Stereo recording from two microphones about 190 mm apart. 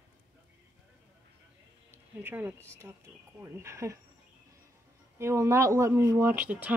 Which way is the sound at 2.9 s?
10° right (ahead or behind).